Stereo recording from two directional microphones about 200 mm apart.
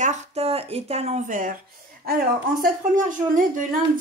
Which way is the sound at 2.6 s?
40° right (ahead or behind).